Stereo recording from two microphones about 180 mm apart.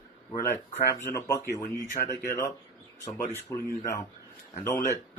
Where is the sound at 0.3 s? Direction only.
15° left (ahead or behind).